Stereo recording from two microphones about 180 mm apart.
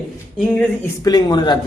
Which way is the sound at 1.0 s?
25° left (ahead or behind).